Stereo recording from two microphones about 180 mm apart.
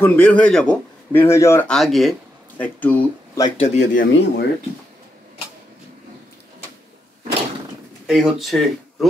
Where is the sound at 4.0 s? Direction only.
80° left.